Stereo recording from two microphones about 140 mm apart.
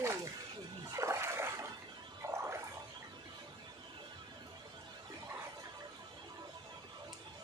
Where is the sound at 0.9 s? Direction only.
20° right (ahead or behind).